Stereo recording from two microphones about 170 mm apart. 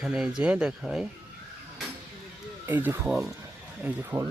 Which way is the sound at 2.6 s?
10° right (ahead or behind).